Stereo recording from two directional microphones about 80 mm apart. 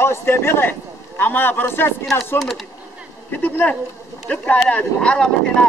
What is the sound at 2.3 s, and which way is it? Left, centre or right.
Speech, centre.